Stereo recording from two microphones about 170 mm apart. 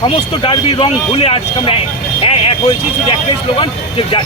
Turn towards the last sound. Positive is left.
turn(degrees=30)  # may be behind; listen again after turning